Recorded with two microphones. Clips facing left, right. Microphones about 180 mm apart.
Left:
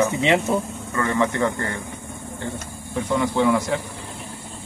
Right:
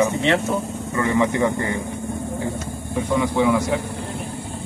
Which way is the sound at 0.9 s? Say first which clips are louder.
Right 2 dB; 15° right (ahead or behind).